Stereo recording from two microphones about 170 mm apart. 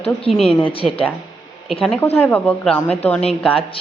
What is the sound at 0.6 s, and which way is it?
Speech, 35° left (ahead or behind).